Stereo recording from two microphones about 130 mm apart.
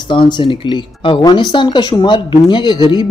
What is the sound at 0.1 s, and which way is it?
Speech, 40° left (ahead or behind).